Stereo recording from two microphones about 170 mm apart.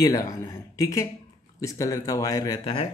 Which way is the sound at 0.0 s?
20° left (ahead or behind).